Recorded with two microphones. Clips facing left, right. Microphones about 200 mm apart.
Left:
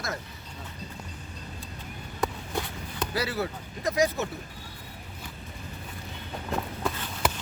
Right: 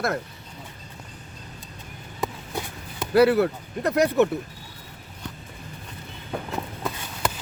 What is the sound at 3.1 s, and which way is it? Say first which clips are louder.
Speech: right 14 dB; 60° right (ahead or behind).